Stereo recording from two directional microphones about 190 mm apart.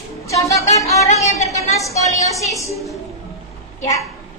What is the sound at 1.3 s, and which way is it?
Speech, 35° left (ahead or behind).